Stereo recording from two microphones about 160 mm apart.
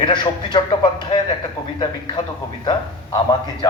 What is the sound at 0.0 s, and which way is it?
A man's voice, 30° left (ahead or behind).